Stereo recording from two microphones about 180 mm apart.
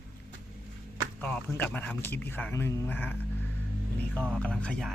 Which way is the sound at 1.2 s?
10° left (ahead or behind).